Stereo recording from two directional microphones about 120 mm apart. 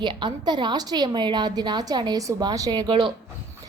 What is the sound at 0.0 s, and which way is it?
A woman's voice, 40° right (ahead or behind).